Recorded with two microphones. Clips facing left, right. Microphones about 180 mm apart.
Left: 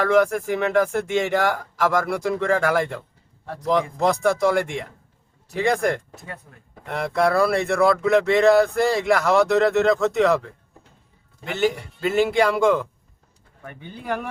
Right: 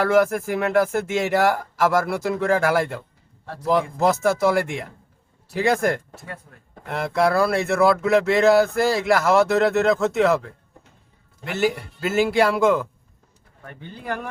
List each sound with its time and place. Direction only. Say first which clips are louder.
0.0 s speech: even; 5° right (ahead or behind)
11.4 s speech: even; 5° right (ahead or behind)